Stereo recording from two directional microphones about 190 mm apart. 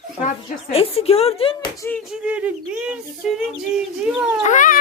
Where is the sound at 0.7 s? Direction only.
30° left (ahead or behind).